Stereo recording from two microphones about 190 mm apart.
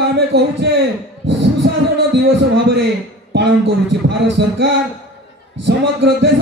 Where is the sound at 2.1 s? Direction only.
70° right (ahead or behind).